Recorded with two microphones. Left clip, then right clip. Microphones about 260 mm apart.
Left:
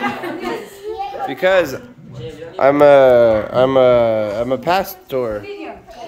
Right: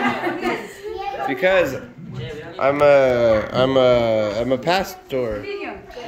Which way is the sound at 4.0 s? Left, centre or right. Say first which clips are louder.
Left 3 dB; left.